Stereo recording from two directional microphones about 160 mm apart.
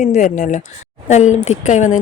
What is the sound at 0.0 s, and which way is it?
A woman's voice, 50° left (ahead or behind).